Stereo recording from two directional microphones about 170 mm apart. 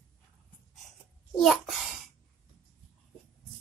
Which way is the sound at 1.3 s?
Centre (ahead or behind).